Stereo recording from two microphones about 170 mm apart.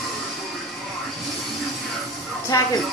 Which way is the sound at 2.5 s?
20° left (ahead or behind).